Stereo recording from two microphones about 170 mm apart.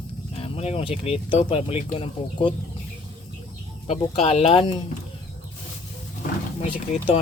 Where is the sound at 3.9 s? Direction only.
40° left (ahead or behind).